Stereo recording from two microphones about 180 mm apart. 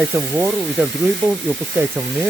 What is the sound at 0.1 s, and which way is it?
Speech, 10° right (ahead or behind).